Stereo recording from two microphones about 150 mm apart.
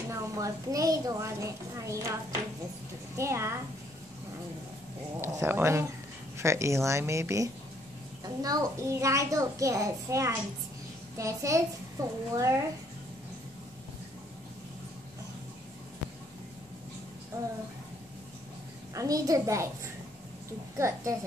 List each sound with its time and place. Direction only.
0.1 s a woman's voice: 20° right (ahead or behind)
3.2 s a woman's voice: 20° right (ahead or behind)
5.2 s a woman's voice: 15° right (ahead or behind)
18.9 s a woman's voice: 25° right (ahead or behind)
20.7 s a woman's voice: 20° right (ahead or behind)